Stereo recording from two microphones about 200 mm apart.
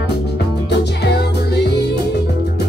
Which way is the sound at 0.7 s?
55° left (ahead or behind).